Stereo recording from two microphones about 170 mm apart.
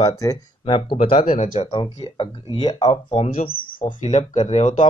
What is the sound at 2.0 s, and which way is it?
Speech, 30° left (ahead or behind).